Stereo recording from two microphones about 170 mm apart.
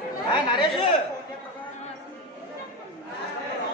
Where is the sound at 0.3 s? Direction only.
25° left (ahead or behind).